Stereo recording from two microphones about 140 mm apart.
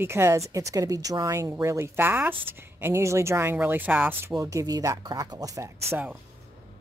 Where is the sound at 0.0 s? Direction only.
20° right (ahead or behind).